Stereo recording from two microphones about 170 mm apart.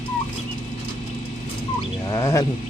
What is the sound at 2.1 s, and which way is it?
Frog, 20° left (ahead or behind).